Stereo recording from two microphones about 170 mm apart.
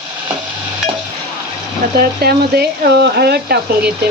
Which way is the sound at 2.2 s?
65° right (ahead or behind).